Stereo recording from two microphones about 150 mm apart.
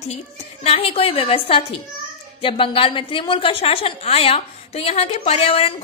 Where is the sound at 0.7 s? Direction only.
40° left (ahead or behind).